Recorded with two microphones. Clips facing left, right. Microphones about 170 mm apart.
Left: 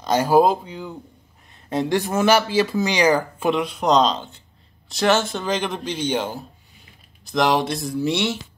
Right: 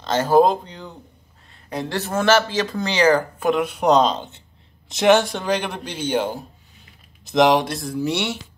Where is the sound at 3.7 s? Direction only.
10° right (ahead or behind).